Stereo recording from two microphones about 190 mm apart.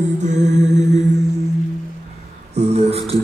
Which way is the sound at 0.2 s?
40° right (ahead or behind).